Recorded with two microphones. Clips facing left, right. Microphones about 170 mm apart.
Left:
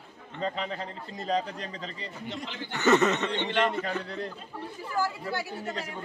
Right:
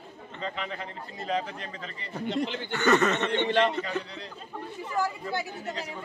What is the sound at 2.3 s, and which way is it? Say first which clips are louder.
Speech: right 10 dB; 65° right (ahead or behind).